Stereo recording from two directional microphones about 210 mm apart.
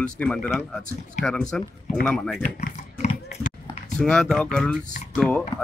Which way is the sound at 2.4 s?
35° left (ahead or behind).